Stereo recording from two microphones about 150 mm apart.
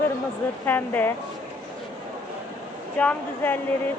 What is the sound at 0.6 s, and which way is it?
Speech, 15° left (ahead or behind).